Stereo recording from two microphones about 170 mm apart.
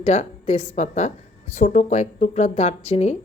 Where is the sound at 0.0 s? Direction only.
40° left (ahead or behind).